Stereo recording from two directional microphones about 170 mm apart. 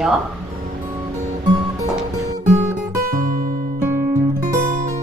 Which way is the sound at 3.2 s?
50° right (ahead or behind).